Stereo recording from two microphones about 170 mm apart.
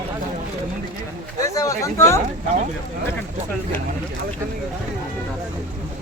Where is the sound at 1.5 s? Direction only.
20° left (ahead or behind).